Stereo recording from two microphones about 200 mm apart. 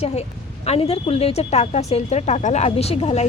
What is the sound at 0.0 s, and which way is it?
Speech, 30° left (ahead or behind).